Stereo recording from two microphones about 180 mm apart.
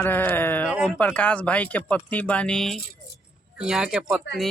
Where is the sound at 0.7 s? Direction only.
5° right (ahead or behind).